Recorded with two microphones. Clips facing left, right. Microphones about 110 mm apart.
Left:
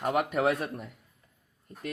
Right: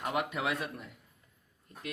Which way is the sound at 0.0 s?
45° left (ahead or behind).